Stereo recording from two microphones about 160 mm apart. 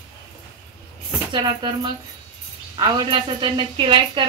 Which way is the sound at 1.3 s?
30° right (ahead or behind).